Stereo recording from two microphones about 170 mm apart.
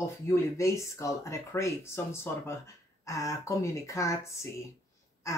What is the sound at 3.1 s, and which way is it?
Speech, 20° left (ahead or behind).